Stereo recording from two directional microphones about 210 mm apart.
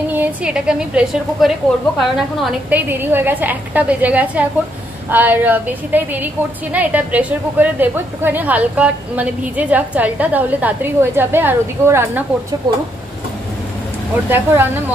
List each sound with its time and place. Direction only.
0.1 s a woman's voice: 5° right (ahead or behind)
14.3 s a woman's voice: 10° right (ahead or behind)